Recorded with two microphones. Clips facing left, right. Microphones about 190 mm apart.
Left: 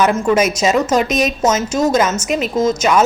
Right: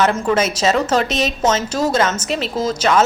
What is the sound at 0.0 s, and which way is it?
A woman's voice, 10° left (ahead or behind).